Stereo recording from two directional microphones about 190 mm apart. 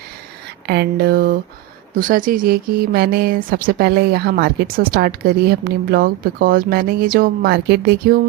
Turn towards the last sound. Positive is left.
turn(degrees=-60)  # may be behind; listen again after turning